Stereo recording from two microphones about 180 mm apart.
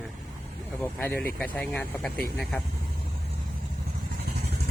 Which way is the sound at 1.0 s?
10° left (ahead or behind).